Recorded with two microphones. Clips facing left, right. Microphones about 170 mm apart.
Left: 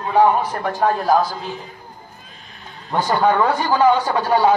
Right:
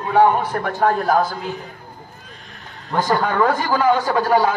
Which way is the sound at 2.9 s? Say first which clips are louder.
Left 2 dB; 45° right (ahead or behind).